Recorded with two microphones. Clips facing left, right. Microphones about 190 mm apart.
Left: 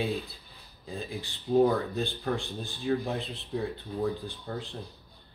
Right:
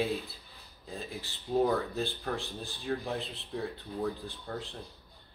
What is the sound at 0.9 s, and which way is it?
Speech, centre (ahead or behind).